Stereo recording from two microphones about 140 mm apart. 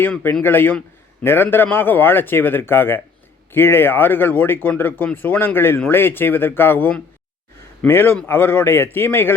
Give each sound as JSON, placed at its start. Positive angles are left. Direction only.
{"t": 0.0, "sound": "speech", "side_deg": 15}